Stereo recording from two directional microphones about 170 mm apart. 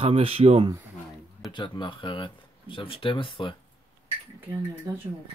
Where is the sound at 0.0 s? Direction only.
35° right (ahead or behind).